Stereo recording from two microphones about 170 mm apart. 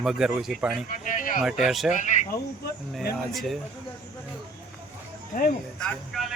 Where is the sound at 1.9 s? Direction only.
45° left (ahead or behind).